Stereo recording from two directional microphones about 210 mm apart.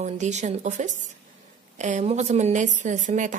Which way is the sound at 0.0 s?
35° right (ahead or behind).